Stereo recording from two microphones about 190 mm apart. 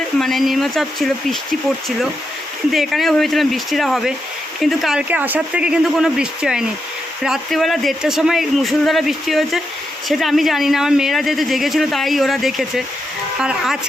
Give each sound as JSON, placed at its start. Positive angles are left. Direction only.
{"t": 0.2, "sound": "speech", "side_deg": 0}
{"t": 2.7, "sound": "speech", "side_deg": 0}